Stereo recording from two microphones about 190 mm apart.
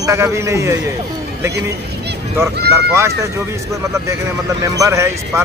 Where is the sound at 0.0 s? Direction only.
15° right (ahead or behind).